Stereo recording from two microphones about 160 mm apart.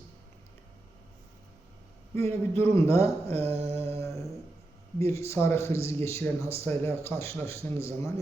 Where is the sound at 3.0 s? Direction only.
40° right (ahead or behind).